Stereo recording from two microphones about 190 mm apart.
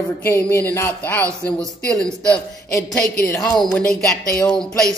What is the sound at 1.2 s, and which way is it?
Speech, 15° right (ahead or behind).